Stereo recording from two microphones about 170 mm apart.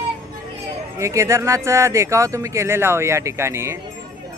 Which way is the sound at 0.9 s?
15° right (ahead or behind).